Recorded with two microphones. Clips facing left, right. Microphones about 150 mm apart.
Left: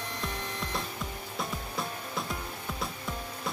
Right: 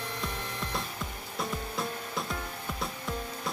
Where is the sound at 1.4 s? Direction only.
Centre (ahead or behind).